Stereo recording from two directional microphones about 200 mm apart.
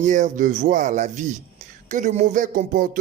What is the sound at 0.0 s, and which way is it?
Speech, 40° right (ahead or behind).